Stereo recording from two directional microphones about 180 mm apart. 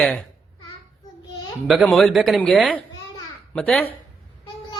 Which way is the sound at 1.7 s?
Centre (ahead or behind).